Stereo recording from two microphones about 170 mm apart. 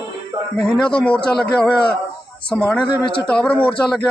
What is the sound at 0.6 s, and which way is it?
A man's voice, 5° left (ahead or behind).